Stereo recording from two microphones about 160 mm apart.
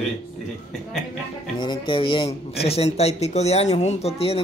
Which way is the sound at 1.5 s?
30° left (ahead or behind).